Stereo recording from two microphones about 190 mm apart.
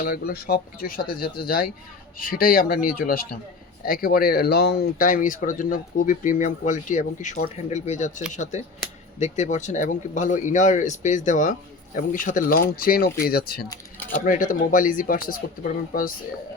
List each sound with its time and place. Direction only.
0.0 s speech: 50° left (ahead or behind)